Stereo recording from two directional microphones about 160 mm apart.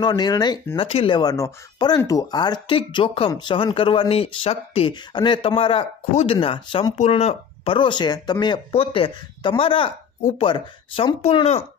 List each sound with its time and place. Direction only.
0.0 s speech: 25° left (ahead or behind); by 11.6 s 40° left (ahead or behind)